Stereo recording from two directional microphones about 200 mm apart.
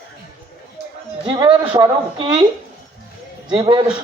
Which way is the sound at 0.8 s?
55° right (ahead or behind).